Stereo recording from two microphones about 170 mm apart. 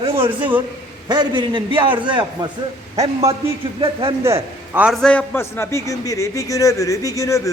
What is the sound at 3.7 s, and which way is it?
Speech, 30° right (ahead or behind).